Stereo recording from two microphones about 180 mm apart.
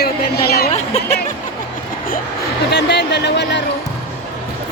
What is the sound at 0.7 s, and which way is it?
Speech, 40° left (ahead or behind).